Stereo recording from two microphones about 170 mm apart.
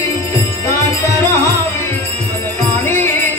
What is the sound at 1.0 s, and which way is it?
Music, 15° left (ahead or behind).